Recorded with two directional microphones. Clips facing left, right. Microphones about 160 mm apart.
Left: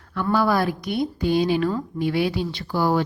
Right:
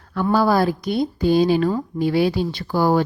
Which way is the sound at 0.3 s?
35° right (ahead or behind).